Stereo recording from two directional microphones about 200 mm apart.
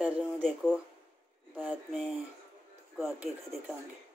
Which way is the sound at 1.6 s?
5° left (ahead or behind).